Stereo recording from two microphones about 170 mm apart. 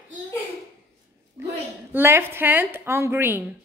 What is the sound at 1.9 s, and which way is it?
A woman's voice, 10° right (ahead or behind).